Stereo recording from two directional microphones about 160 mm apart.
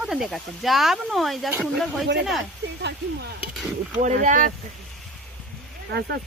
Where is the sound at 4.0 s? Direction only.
50° right (ahead or behind).